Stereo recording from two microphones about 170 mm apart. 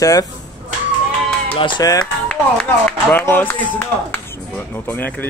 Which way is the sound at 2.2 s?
5° left (ahead or behind).